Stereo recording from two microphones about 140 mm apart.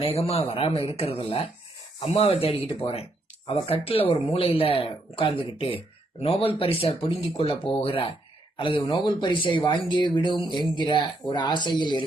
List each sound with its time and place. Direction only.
0.0 s speech: 45° left (ahead or behind)